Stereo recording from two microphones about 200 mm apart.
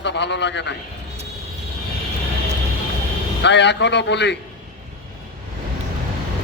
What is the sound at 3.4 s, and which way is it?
Speech, 60° left (ahead or behind).